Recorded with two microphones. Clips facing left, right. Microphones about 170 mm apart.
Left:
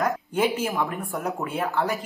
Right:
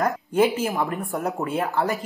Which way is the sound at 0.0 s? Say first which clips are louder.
Right 3 dB; centre (ahead or behind).